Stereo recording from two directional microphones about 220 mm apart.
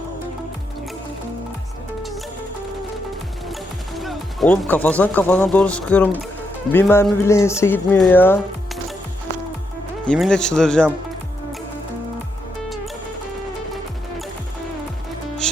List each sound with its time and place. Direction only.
3.5 s speech: centre (ahead or behind)
10.1 s speech: 5° left (ahead or behind)